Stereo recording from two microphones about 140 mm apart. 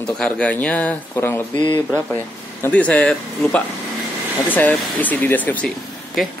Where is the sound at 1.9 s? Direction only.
15° left (ahead or behind).